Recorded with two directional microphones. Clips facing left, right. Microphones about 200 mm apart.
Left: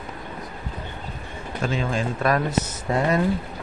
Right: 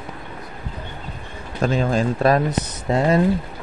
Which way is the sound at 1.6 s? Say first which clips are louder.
Right 6 dB; 40° right (ahead or behind).